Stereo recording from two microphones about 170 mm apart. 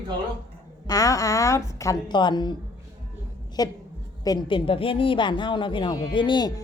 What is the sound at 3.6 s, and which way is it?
Speech, 20° left (ahead or behind).